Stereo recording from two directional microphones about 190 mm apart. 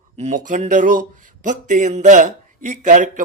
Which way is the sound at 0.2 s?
40° right (ahead or behind).